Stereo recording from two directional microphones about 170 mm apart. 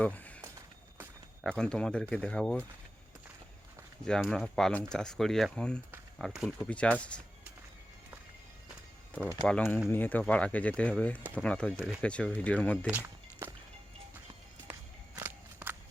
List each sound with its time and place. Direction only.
0.0 s a sound: 10° left (ahead or behind)
1.5 s speech: 5° left (ahead or behind)
4.0 s speech: 5° left (ahead or behind)
9.5 s speech: 5° left (ahead or behind)
12.0 s speech: 5° left (ahead or behind)
12.9 s a sound: 10° right (ahead or behind)
14.7 s walk: 10° right (ahead or behind)